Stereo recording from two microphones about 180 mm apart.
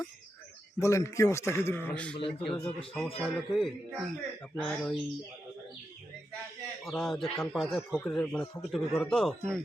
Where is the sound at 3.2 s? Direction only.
Centre (ahead or behind).